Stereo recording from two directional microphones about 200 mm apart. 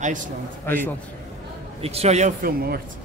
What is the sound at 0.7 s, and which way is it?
Speech, 10° left (ahead or behind).